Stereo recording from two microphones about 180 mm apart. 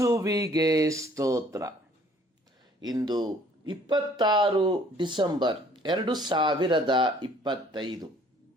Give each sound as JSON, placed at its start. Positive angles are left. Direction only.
{"t": 0.0, "sound": "speech", "side_deg": -15}
{"t": 2.8, "sound": "speech", "side_deg": -20}